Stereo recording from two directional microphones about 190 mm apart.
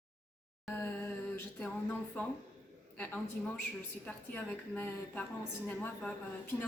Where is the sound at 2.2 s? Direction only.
10° left (ahead or behind).